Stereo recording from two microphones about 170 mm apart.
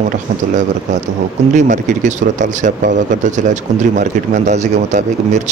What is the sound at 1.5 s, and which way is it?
Speech, 45° right (ahead or behind).